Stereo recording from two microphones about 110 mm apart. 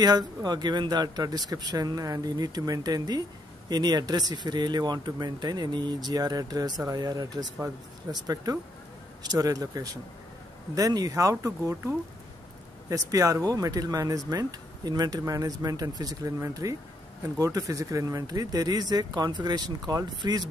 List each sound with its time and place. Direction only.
0.0 s speech: 40° right (ahead or behind)
12.9 s speech: 30° right (ahead or behind)